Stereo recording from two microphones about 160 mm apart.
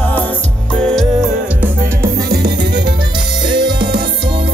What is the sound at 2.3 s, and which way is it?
Music, 90° right.